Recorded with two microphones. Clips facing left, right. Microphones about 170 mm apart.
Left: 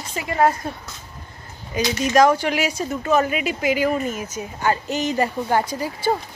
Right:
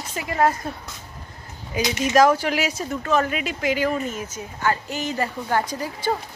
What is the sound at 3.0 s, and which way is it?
A woman's voice, 10° left (ahead or behind).